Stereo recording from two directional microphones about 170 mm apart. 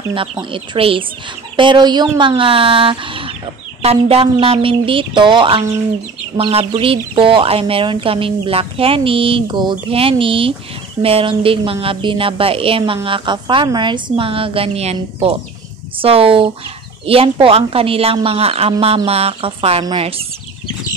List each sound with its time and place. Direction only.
0.4 s a woman's voice: 30° right (ahead or behind)